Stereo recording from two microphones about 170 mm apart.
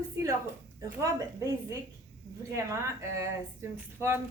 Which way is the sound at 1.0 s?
20° right (ahead or behind).